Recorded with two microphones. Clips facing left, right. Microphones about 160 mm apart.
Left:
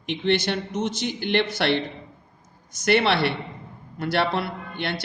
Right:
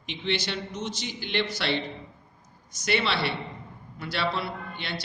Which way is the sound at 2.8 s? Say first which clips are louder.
Left 7 dB; 60° left (ahead or behind).